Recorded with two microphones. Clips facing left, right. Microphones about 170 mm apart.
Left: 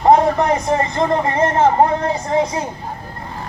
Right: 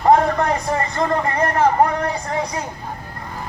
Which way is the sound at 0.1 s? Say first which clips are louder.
Left 2 dB; 20° left (ahead or behind).